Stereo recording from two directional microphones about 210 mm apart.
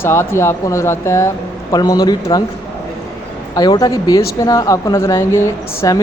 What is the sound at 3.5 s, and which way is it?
Speech, 20° left (ahead or behind).